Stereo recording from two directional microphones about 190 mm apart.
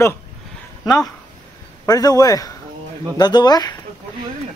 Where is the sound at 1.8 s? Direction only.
20° left (ahead or behind).